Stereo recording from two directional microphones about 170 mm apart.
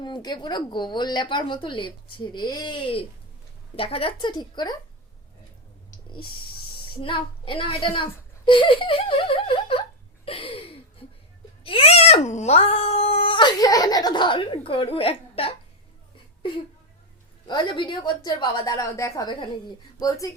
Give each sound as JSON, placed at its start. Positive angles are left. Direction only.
{"t": 0.0, "sound": "speech", "side_deg": 25}
{"t": 6.9, "sound": "a child's voice", "side_deg": 30}
{"t": 10.2, "sound": "a sound", "side_deg": 35}
{"t": 11.6, "sound": "a child's voice", "side_deg": 35}
{"t": 17.4, "sound": "speech", "side_deg": 25}